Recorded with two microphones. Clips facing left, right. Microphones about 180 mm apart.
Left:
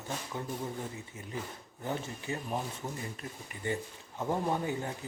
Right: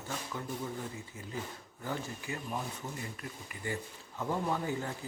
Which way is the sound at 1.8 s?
25° left (ahead or behind).